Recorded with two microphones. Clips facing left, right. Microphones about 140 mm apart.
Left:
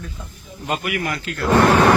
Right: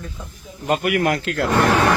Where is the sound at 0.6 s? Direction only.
50° right (ahead or behind); by 1.5 s 70° right (ahead or behind).